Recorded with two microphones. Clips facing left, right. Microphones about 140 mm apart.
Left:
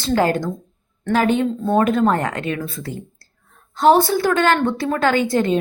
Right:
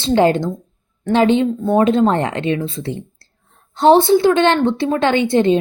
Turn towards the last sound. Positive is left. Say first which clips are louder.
# right 4 dB
turn(degrees=-25)  # may be behind; listen again after turning